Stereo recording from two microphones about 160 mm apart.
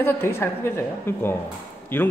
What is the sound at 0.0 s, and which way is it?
A man's voice, 15° left (ahead or behind).